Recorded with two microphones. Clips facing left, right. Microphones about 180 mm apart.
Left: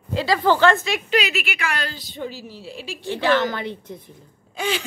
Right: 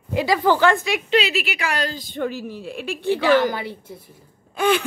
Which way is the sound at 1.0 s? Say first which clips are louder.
Right 3 dB; 30° right (ahead or behind).